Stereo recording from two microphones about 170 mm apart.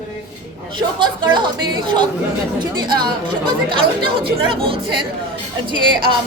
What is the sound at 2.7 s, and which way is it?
Speech, 25° right (ahead or behind).